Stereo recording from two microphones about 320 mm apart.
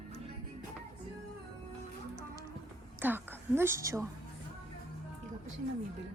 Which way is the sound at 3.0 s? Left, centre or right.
Centre.